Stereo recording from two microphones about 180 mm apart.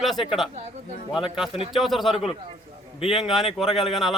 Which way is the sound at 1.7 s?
Centre (ahead or behind).